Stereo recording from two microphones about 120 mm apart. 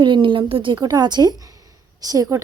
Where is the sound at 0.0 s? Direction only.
45° right (ahead or behind).